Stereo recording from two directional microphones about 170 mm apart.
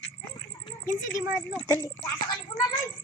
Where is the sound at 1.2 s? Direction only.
10° right (ahead or behind).